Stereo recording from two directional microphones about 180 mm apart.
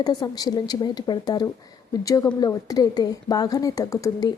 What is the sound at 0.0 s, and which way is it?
A woman's voice, 20° left (ahead or behind).